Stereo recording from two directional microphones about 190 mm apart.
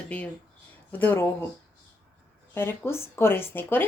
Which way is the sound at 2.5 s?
10° left (ahead or behind).